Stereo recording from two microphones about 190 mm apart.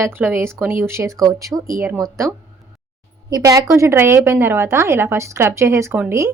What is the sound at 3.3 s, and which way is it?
Speech, 15° right (ahead or behind).